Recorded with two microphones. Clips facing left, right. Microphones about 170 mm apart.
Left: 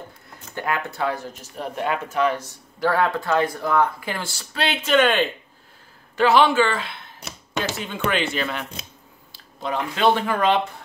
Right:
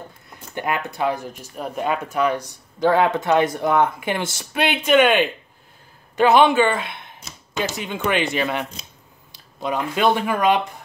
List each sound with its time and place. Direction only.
0.6 s speech: 20° right (ahead or behind)
7.2 s a sound: 60° left (ahead or behind)
7.7 s speech: 15° right (ahead or behind)